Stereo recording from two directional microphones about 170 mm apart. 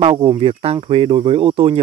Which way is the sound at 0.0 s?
35° right (ahead or behind).